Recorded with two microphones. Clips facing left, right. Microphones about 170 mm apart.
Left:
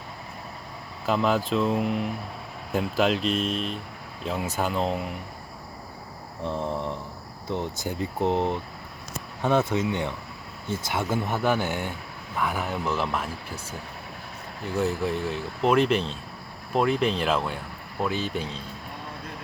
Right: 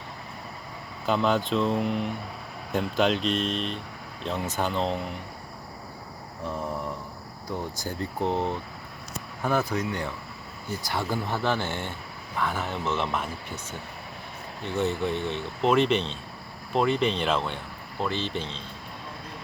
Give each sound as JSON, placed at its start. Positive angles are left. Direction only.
{"t": 1.0, "sound": "speech", "side_deg": 0}
{"t": 6.4, "sound": "speech", "side_deg": 30}
{"t": 11.4, "sound": "speech", "side_deg": 15}
{"t": 12.4, "sound": "speech", "side_deg": 0}
{"t": 14.6, "sound": "speech", "side_deg": 0}